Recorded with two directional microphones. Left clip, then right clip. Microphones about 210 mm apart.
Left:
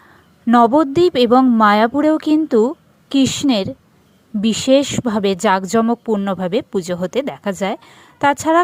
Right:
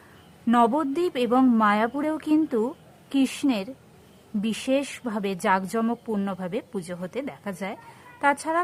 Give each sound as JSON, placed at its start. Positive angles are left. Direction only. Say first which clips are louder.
{"t": 0.5, "sound": "speech", "louder": "left 9 dB", "side_deg": 30}